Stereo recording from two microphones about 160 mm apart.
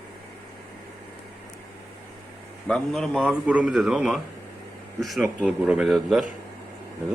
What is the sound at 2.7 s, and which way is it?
Speech, 5° left (ahead or behind).